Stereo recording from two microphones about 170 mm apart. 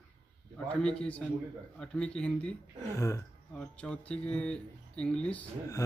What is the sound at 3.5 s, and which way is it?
Speech, 5° left (ahead or behind).